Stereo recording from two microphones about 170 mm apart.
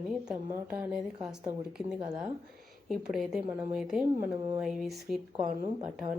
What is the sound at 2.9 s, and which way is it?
A woman's voice, centre (ahead or behind).